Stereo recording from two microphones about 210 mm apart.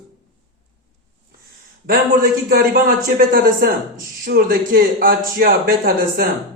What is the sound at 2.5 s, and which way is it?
A man's voice, 45° right (ahead or behind).